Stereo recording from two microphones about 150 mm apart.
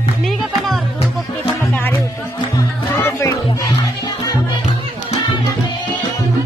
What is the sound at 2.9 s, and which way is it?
Music, 20° left (ahead or behind).